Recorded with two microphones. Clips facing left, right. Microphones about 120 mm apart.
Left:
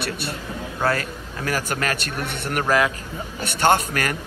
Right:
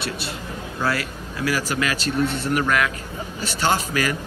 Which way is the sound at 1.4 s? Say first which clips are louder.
Right 1 dB; 50° left (ahead or behind).